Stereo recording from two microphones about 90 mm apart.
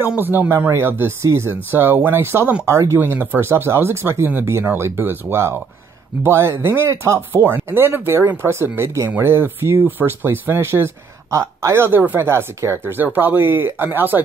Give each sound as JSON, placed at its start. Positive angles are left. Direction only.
{"t": 0.2, "sound": "speech", "side_deg": -25}
{"t": 2.7, "sound": "speech", "side_deg": -35}
{"t": 3.0, "sound": "speech", "side_deg": -20}
{"t": 7.4, "sound": "speech", "side_deg": -20}